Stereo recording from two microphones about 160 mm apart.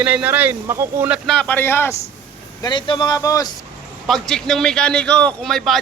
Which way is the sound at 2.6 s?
30° left (ahead or behind).